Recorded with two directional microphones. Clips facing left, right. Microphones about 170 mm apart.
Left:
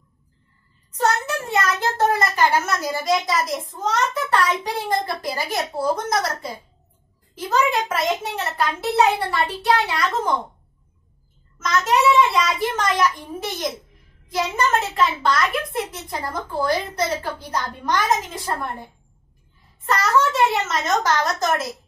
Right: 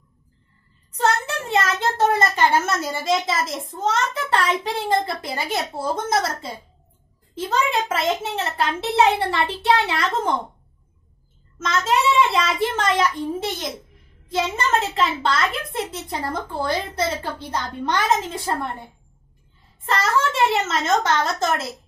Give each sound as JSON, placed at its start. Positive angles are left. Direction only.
{"t": 0.9, "sound": "a child's voice", "side_deg": -25}
{"t": 11.6, "sound": "a woman's voice", "side_deg": -25}
{"t": 19.9, "sound": "a woman's voice", "side_deg": -30}